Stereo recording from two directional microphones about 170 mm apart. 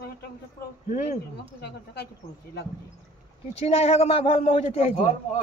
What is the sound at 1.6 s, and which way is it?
Speech, 75° left (ahead or behind).